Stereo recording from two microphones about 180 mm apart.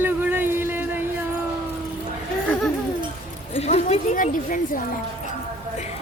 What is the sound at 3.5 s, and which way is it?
Speech, 35° left (ahead or behind).